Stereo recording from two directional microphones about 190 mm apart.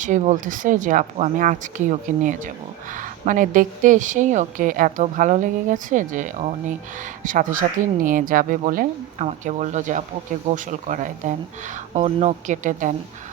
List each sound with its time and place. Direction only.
0.0 s a woman's voice: 40° right (ahead or behind)